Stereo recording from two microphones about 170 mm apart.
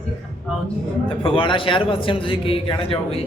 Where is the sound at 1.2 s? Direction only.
30° left (ahead or behind).